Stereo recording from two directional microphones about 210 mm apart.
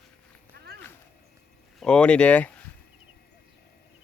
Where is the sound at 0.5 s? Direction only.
50° right (ahead or behind).